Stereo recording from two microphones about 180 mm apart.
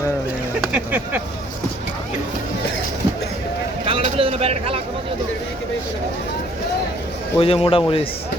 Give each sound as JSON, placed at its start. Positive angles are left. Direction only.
{"t": 0.7, "sound": "speech", "side_deg": -10}
{"t": 3.8, "sound": "a sound", "side_deg": -30}
{"t": 7.3, "sound": "a man's voice", "side_deg": 30}